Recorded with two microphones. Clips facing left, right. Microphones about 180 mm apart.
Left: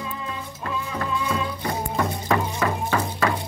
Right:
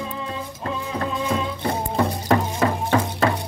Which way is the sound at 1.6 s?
30° right (ahead or behind).